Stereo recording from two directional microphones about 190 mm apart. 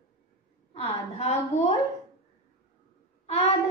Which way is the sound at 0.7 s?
35° left (ahead or behind).